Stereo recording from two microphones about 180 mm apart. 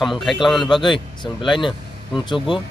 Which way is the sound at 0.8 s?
25° left (ahead or behind).